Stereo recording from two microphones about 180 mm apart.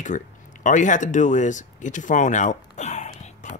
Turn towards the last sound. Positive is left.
turn(degrees=40)  # may be behind; listen again after turning